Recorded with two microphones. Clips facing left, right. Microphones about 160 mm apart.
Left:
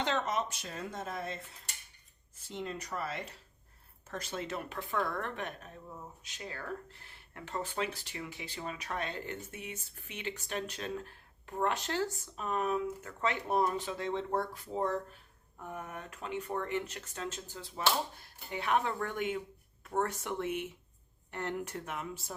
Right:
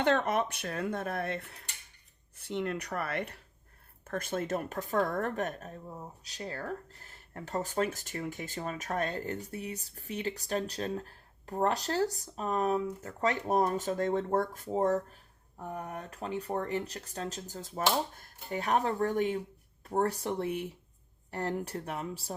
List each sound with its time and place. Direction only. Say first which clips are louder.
0.0 s speech: right 5 dB; 55° right (ahead or behind); by 22.4 s 35° right (ahead or behind)